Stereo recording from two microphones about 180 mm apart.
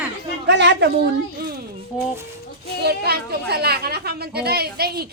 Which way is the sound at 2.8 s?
60° right (ahead or behind).